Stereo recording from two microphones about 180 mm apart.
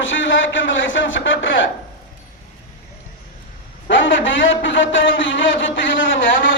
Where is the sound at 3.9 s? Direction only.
90° left.